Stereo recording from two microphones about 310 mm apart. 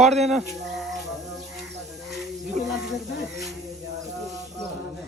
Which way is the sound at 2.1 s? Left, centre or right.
Centre.